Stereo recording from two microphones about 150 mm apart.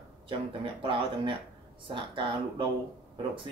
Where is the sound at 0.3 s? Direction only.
35° right (ahead or behind).